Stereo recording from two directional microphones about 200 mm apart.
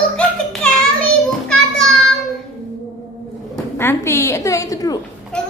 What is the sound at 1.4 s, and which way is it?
Children playing, 5° left (ahead or behind).